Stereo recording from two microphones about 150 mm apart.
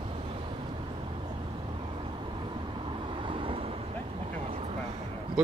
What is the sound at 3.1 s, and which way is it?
Vehicle, 35° right (ahead or behind).